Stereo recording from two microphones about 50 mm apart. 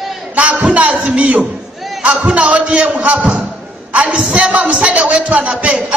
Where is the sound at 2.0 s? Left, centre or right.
Right.